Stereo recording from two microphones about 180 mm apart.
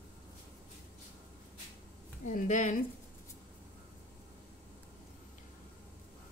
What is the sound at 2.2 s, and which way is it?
Speech, 45° left (ahead or behind).